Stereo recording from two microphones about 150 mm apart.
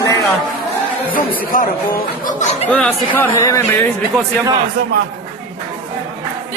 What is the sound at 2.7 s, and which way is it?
Speech, 10° left (ahead or behind).